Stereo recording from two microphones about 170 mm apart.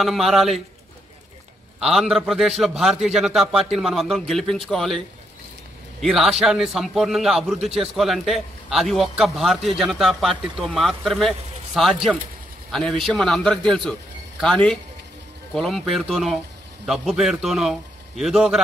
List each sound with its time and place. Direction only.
0.0 s a man's voice: centre (ahead or behind)
1.8 s a man's voice: centre (ahead or behind)